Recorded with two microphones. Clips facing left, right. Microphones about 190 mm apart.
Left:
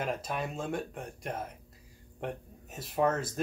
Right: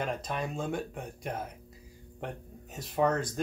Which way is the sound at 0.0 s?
5° left (ahead or behind).